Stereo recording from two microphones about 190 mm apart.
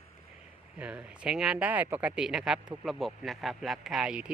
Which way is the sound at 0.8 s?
5° right (ahead or behind).